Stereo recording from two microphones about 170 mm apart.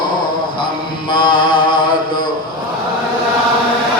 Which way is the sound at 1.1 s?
25° left (ahead or behind).